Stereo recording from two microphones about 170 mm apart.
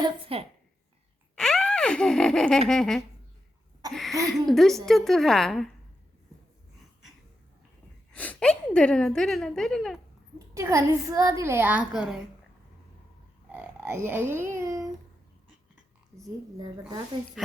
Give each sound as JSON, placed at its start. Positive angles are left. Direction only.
{"t": 0.0, "sound": "a woman's voice", "side_deg": -35}
{"t": 1.4, "sound": "a sound", "side_deg": 5}
{"t": 2.6, "sound": "a woman's voice", "side_deg": 5}
{"t": 8.1, "sound": "a woman's voice", "side_deg": 10}
{"t": 10.3, "sound": "a woman's voice", "side_deg": -20}
{"t": 13.5, "sound": "speech", "side_deg": -10}
{"t": 17.4, "sound": "speech", "side_deg": 0}